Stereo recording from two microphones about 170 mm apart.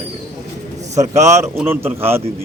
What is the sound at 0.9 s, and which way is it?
Speech, 15° right (ahead or behind).